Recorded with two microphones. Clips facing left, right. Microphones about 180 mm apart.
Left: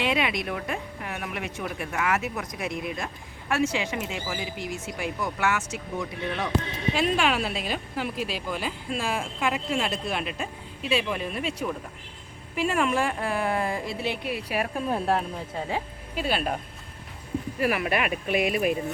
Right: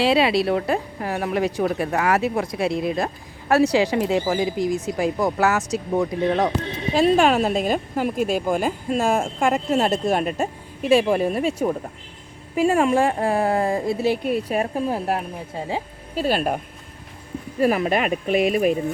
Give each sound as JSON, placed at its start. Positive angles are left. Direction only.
{"t": 0.0, "sound": "a woman's voice", "side_deg": -35}
{"t": 16.1, "sound": "speech", "side_deg": -40}
{"t": 17.6, "sound": "speech", "side_deg": -40}